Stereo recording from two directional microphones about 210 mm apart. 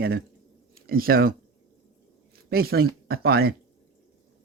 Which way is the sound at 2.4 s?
50° right (ahead or behind).